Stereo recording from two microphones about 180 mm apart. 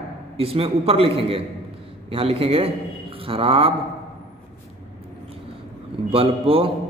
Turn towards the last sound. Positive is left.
turn(degrees=-30)  # may be behind; listen again after turning